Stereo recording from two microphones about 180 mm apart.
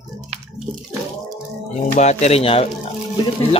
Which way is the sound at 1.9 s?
40° left (ahead or behind).